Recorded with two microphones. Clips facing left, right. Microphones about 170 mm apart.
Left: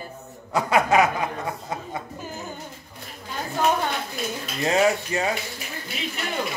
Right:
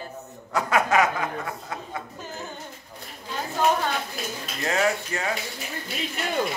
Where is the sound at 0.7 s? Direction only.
15° left (ahead or behind).